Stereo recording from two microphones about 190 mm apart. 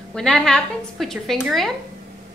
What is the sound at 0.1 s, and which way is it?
A woman's voice, 5° left (ahead or behind).